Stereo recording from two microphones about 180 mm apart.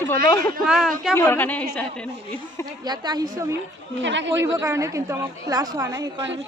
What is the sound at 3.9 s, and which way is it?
Speech, 90° right.